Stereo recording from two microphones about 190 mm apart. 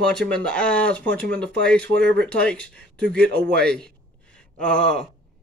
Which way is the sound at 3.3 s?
60° right (ahead or behind).